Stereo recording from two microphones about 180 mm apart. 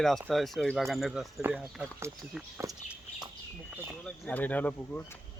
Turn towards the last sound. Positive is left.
turn(degrees=10)  # may be behind; listen again after turning